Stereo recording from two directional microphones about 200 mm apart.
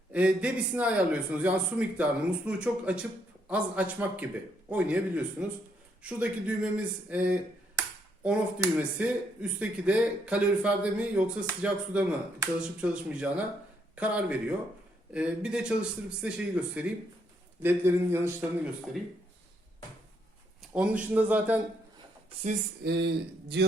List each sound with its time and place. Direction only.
0.1 s a man's voice: 5° right (ahead or behind)
20.6 s speech: 5° right (ahead or behind)
22.8 s speech: 55° right (ahead or behind)